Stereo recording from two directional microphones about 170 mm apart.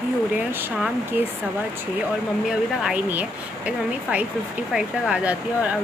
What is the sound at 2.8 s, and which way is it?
Speech, 5° right (ahead or behind).